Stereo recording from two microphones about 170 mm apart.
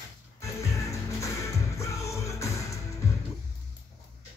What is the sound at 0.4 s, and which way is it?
Music, 15° left (ahead or behind).